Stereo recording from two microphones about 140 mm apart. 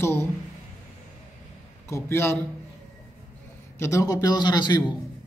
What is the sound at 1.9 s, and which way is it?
Speech, 15° left (ahead or behind).